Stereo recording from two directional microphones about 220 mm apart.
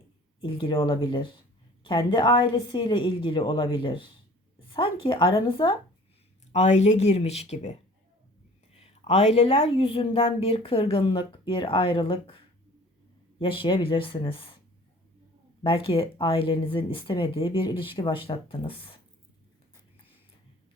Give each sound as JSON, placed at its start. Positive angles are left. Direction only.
{"t": 0.4, "sound": "speech", "side_deg": 25}
{"t": 13.4, "sound": "speech", "side_deg": 20}
{"t": 15.6, "sound": "speech", "side_deg": 25}